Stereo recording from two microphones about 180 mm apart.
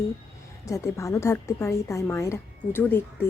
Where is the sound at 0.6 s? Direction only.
15° left (ahead or behind).